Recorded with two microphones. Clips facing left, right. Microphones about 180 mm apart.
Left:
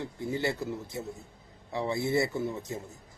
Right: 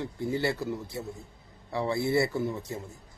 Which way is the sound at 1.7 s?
20° left (ahead or behind).